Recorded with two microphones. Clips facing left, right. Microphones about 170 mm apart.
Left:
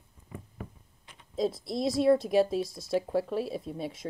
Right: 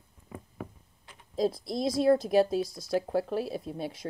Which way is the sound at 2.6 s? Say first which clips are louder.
Even; 25° left (ahead or behind).